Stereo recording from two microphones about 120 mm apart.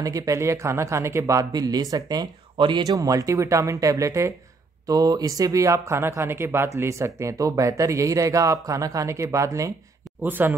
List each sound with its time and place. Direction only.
0.0 s speech: 30° right (ahead or behind)
2.8 s speech: 30° right (ahead or behind)
10.2 s speech: 15° right (ahead or behind)